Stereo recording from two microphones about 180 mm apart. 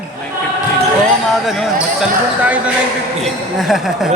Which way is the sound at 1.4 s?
Centre (ahead or behind).